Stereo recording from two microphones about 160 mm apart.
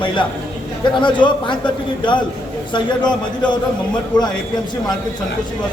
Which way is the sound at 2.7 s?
30° left (ahead or behind).